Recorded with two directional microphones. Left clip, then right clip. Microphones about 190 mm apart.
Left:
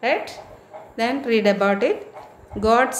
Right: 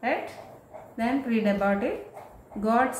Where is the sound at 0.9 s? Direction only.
50° left (ahead or behind).